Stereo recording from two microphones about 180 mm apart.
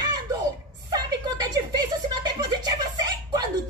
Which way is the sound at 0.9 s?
25° right (ahead or behind).